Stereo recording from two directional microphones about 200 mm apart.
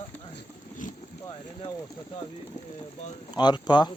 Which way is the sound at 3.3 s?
20° left (ahead or behind).